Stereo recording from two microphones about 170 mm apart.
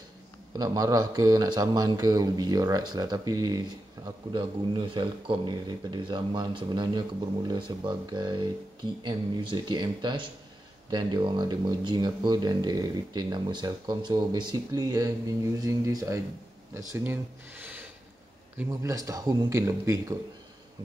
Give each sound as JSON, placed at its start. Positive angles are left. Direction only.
{"t": 0.5, "sound": "a man's voice", "side_deg": -20}